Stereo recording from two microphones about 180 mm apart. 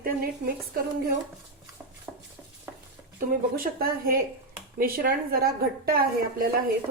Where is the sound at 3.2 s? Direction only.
55° right (ahead or behind).